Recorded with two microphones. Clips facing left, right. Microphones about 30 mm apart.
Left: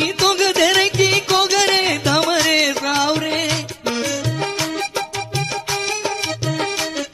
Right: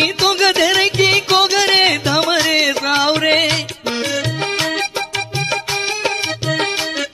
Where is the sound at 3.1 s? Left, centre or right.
Right.